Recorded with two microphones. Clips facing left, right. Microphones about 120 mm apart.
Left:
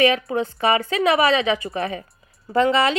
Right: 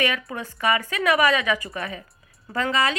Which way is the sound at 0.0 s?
30° left (ahead or behind).